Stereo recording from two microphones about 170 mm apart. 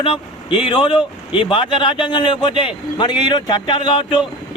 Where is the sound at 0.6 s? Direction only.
30° left (ahead or behind).